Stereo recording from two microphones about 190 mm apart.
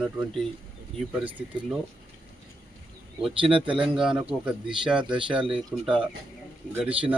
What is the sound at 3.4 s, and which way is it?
Speech, 25° right (ahead or behind).